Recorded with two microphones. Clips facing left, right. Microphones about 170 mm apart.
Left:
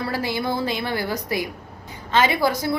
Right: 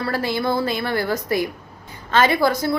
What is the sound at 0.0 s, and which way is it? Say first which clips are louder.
A woman's voice: right 2 dB; 15° left (ahead or behind).